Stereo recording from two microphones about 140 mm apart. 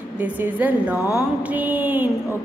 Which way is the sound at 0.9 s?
20° left (ahead or behind).